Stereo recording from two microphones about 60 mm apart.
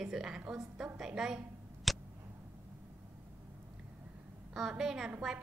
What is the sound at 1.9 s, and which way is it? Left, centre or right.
Tick, centre.